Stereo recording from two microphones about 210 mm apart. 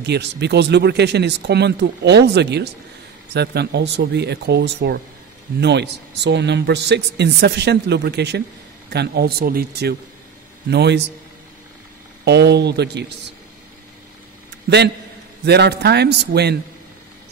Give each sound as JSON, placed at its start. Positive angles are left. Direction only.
{"t": 0.0, "sound": "a man's voice", "side_deg": -55}
{"t": 12.3, "sound": "a man's voice", "side_deg": -55}
{"t": 15.4, "sound": "a man's voice", "side_deg": -50}